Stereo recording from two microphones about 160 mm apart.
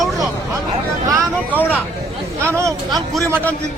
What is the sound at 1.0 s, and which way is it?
Vehicle, 20° right (ahead or behind).